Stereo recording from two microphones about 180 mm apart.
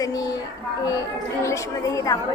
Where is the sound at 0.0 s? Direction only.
20° left (ahead or behind).